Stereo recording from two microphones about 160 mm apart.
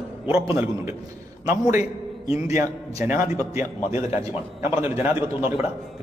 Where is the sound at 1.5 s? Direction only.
15° right (ahead or behind).